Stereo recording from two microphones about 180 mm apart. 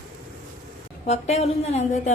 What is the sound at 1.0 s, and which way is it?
Speech, 35° left (ahead or behind).